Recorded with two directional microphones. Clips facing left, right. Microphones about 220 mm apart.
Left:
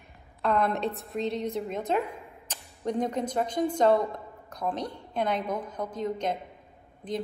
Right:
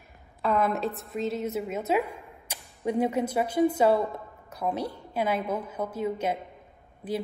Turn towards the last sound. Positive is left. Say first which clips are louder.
# right 2 dB
turn(degrees=-5)  # may be behind; listen again after turning